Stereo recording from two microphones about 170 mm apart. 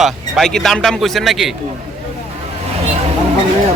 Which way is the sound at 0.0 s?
Centre (ahead or behind).